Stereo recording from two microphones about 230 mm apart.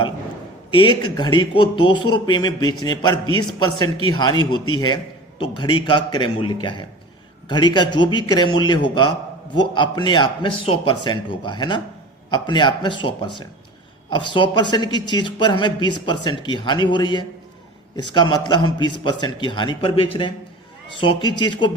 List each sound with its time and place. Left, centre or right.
0.7 s speech: left